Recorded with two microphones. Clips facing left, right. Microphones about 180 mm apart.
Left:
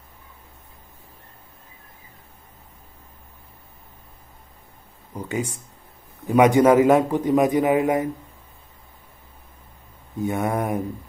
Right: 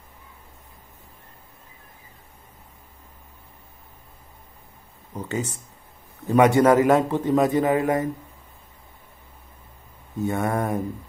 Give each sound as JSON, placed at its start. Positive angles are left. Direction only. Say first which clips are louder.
{"t": 5.1, "sound": "a man's voice", "louder": "left 1 dB", "side_deg": 10}
{"t": 10.1, "sound": "a man's voice", "louder": "left 1 dB", "side_deg": 15}